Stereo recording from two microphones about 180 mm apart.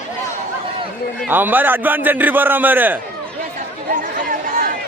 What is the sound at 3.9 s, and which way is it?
Chatter, 50° right (ahead or behind).